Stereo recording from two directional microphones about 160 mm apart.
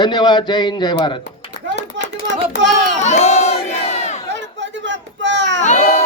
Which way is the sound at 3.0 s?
45° left (ahead or behind).